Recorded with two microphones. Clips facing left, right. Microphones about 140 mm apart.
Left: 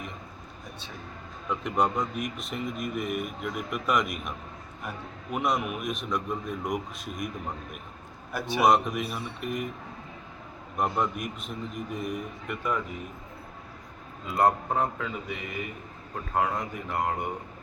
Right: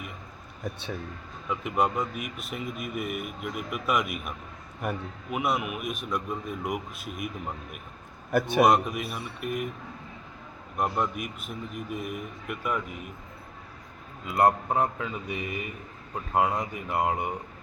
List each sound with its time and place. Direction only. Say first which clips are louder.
1.5 s a man's voice: even; 5° right (ahead or behind)
8.3 s a man's voice: right 7 dB; 55° right (ahead or behind)
8.6 s a man's voice: left 4 dB; centre (ahead or behind)
10.8 s a man's voice: even; centre (ahead or behind)
14.3 s a man's voice: right 1 dB; 10° right (ahead or behind)